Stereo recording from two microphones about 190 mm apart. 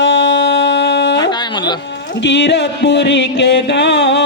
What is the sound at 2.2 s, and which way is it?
Music, 65° left (ahead or behind).